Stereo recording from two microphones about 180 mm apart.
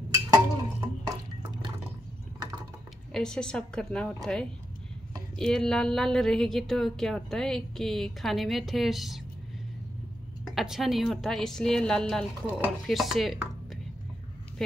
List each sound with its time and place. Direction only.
0.3 s a sound: 20° right (ahead or behind)
3.1 s speech: 5° left (ahead or behind)
10.5 s speech: centre (ahead or behind)